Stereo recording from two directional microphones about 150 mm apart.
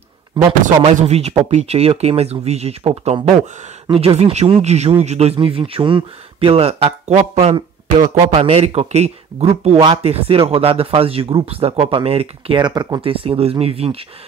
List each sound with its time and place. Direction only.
0.3 s speech: 30° right (ahead or behind)
0.8 s speech: 45° right (ahead or behind)
8.0 s a man's voice: 30° right (ahead or behind)
8.4 s speech: 45° right (ahead or behind)